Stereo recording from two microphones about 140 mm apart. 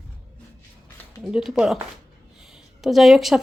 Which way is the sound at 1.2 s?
Centre (ahead or behind).